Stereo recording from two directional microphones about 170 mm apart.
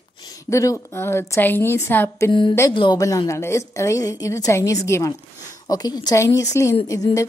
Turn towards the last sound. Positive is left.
turn(degrees=20)  # may be behind; listen again after turning